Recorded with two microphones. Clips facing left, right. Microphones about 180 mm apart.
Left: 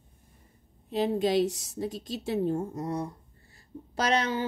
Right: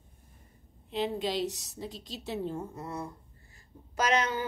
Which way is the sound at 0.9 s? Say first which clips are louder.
Left 5 dB; 40° left (ahead or behind).